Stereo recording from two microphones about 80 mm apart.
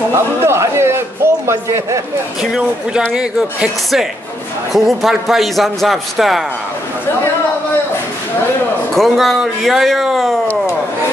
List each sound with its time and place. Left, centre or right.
0.1 s a man's voice: right
3.1 s a man's voice: centre
8.9 s a man's voice: centre